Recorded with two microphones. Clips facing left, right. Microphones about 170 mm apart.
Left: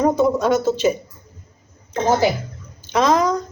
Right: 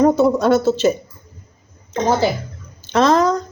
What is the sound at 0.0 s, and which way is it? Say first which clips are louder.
Speech: right 3 dB; 10° left (ahead or behind).